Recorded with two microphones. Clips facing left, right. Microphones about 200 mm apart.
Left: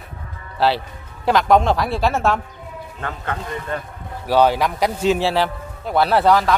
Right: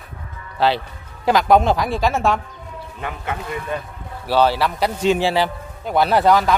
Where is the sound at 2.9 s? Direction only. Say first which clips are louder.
Even; 10° right (ahead or behind).